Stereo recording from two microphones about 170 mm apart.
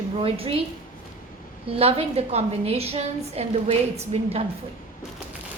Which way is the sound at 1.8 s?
35° right (ahead or behind).